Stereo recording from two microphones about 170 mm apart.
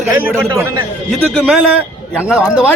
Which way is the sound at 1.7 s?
5° right (ahead or behind).